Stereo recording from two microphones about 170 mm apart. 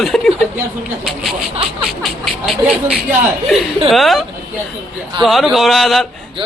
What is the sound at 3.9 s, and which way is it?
A man's voice, centre (ahead or behind).